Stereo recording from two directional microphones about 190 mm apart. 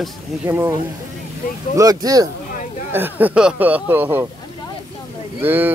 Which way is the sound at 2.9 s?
10° right (ahead or behind).